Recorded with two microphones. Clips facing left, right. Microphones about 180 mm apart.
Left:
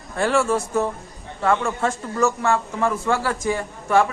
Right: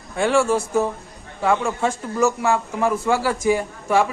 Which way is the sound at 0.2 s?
Centre (ahead or behind).